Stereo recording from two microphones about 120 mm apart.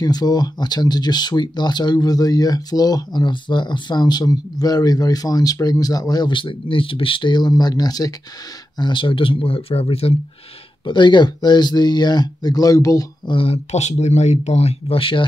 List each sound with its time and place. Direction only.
0.0 s speech: 35° left (ahead or behind); by 10.1 s 55° left (ahead or behind)
10.9 s speech: 40° left (ahead or behind)
13.3 s speech: 55° left (ahead or behind)